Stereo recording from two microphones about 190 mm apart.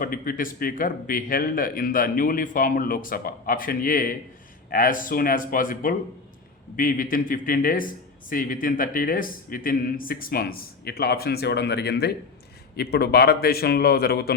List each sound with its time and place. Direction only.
0.0 s a man's voice: 45° left (ahead or behind)